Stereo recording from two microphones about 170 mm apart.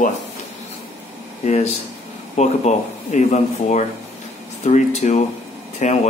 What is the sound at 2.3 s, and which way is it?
Speech, 45° left (ahead or behind).